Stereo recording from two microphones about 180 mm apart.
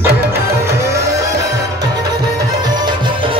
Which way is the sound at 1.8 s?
20° right (ahead or behind).